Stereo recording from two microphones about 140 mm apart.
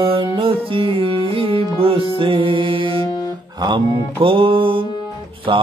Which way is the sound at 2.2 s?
40° right (ahead or behind).